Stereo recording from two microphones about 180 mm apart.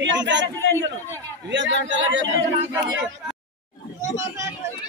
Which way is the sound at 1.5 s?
90° right.